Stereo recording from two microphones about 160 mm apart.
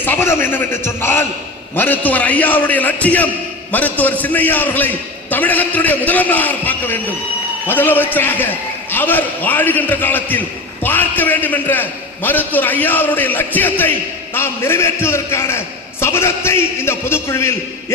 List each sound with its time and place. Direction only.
0.0 s a man's voice: 15° left (ahead or behind)